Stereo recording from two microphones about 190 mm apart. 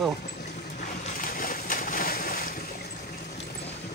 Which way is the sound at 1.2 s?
45° left (ahead or behind).